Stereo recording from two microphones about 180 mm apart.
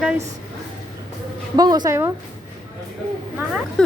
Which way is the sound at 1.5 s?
20° right (ahead or behind).